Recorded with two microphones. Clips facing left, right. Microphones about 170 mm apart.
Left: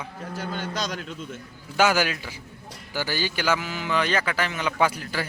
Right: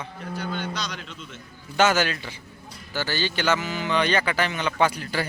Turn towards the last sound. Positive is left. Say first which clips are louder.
# right 1 dB
turn(degrees=0)  # may be behind; listen again after turning